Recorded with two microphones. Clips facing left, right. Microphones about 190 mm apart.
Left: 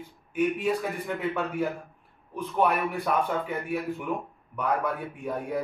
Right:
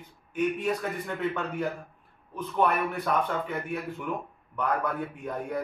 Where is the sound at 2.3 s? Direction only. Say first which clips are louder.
Left 1 dB; 10° left (ahead or behind).